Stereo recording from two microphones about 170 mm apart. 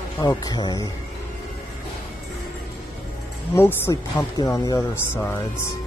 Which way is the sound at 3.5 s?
15° left (ahead or behind).